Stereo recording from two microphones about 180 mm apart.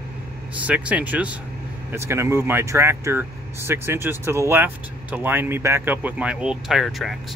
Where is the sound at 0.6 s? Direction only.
10° right (ahead or behind).